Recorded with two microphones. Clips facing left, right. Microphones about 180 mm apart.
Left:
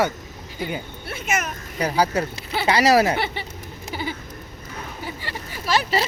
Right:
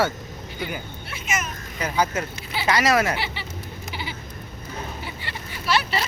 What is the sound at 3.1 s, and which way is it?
Speech, 50° left (ahead or behind).